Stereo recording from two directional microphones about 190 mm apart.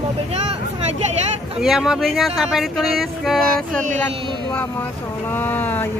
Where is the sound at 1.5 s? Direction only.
5° right (ahead or behind).